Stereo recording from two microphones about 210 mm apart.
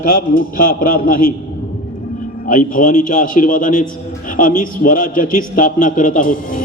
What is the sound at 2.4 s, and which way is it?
Speech, 40° left (ahead or behind).